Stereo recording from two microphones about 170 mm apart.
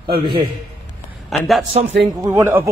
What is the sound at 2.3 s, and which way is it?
Speech, 15° right (ahead or behind).